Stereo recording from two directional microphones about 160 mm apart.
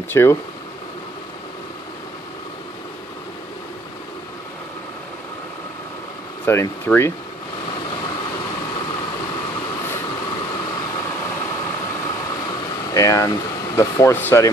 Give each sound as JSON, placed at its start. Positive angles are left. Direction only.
{"t": 0.1, "sound": "speech", "side_deg": 15}
{"t": 6.4, "sound": "speech", "side_deg": 15}
{"t": 12.9, "sound": "speech", "side_deg": 20}